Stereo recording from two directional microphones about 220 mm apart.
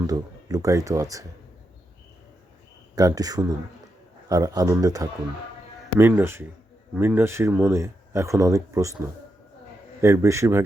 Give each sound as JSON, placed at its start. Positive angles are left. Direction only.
{"t": 0.0, "sound": "speech", "side_deg": -15}
{"t": 2.9, "sound": "speech", "side_deg": -15}